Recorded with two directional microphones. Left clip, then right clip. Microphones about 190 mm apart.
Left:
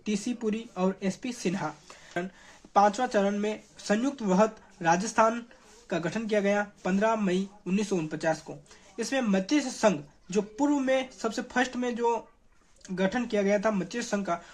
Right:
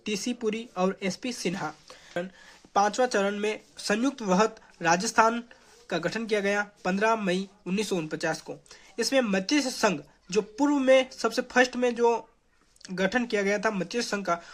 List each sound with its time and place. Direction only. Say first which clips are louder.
0.0 s a woman's voice: right 2 dB; 15° right (ahead or behind)